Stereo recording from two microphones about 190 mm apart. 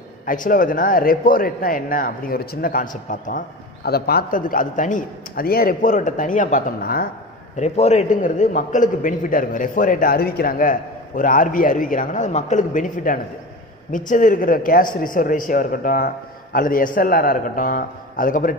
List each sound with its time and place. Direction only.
0.2 s a man's voice: 45° left (ahead or behind)
7.5 s a man's voice: 35° left (ahead or behind)